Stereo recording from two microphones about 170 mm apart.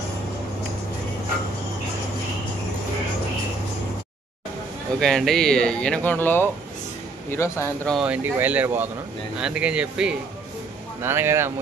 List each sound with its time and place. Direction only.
5.0 s speech: 5° left (ahead or behind)
7.9 s speech: 5° right (ahead or behind)